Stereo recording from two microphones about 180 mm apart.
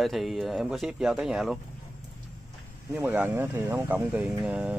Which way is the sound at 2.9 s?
10° right (ahead or behind).